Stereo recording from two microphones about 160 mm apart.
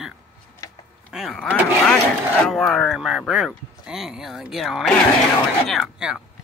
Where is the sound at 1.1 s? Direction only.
Centre (ahead or behind).